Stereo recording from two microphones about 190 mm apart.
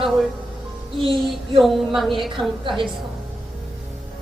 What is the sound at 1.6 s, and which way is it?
Speech, centre (ahead or behind).